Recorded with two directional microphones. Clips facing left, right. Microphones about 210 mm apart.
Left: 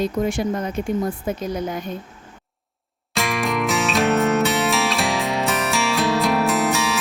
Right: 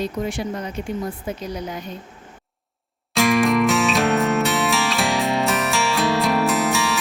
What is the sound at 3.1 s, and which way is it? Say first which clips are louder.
Music: right 6 dB; centre (ahead or behind).